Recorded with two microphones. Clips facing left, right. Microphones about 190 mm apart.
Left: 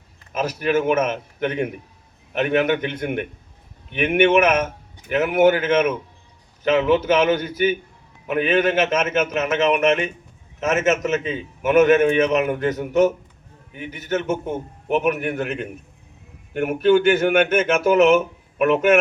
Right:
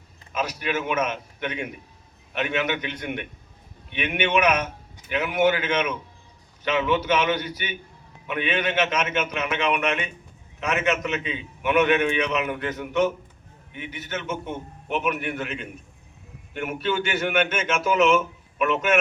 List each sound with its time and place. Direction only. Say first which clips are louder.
0.3 s a man's voice: left 7 dB; 50° left (ahead or behind)